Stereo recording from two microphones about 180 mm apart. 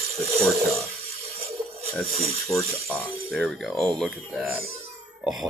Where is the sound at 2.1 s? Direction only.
35° right (ahead or behind).